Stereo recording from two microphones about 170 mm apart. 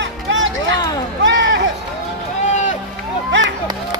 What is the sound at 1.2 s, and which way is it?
Run, 90° right.